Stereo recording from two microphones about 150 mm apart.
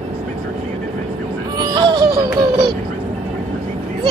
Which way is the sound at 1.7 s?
30° right (ahead or behind).